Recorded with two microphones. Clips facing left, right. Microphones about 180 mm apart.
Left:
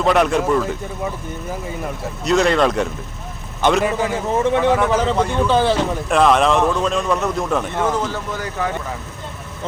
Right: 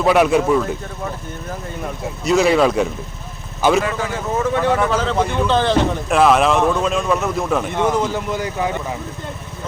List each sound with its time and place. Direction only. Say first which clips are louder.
0.0 s speech: right 2 dB; 5° right (ahead or behind)
2.2 s speech: right 1 dB; 5° right (ahead or behind)
4.4 s speech: left 1 dB; 20° left (ahead or behind); by 8.7 s 15° right (ahead or behind)